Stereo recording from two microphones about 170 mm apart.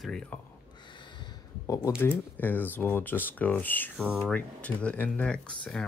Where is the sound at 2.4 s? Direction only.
10° left (ahead or behind).